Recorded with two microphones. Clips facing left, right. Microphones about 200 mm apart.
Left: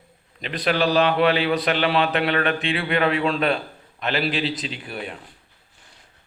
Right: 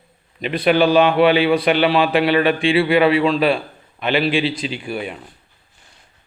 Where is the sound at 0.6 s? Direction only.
5° right (ahead or behind).